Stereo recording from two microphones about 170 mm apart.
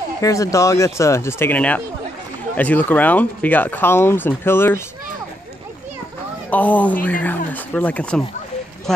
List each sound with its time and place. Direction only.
0.2 s speech: 20° left (ahead or behind)
6.5 s speech: 10° left (ahead or behind)